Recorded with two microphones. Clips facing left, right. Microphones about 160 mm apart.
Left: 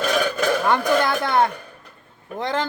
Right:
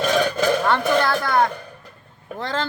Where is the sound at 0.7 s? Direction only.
20° left (ahead or behind).